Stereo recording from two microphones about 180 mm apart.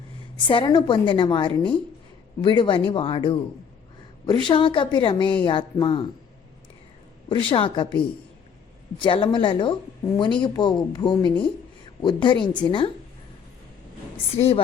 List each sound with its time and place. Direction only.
0.4 s a woman's voice: 25° left (ahead or behind)
7.3 s a woman's voice: 25° left (ahead or behind)
9.0 s a woman's voice: 30° left (ahead or behind)
14.3 s a woman's voice: 35° left (ahead or behind)